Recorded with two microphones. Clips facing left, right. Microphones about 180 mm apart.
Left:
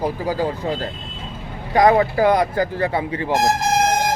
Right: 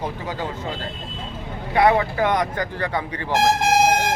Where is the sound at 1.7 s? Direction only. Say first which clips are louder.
Left 3 dB; 35° left (ahead or behind).